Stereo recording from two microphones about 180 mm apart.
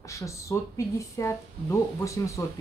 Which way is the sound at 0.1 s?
15° left (ahead or behind).